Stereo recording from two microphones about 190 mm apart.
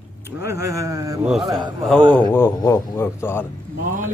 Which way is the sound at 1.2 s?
Centre (ahead or behind).